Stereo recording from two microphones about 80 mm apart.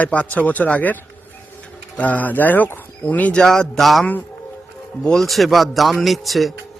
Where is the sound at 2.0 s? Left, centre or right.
Centre.